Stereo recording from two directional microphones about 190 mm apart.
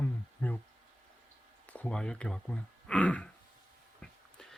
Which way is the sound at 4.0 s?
Centre (ahead or behind).